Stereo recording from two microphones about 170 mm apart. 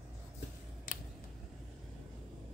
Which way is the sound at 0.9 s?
55° left (ahead or behind).